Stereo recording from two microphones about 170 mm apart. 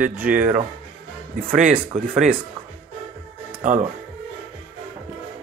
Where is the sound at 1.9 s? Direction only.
45° right (ahead or behind).